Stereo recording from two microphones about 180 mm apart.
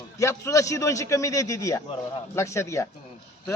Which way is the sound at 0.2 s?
15° left (ahead or behind).